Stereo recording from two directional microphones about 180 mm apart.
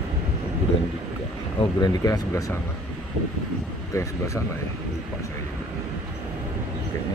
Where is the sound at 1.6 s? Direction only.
25° left (ahead or behind).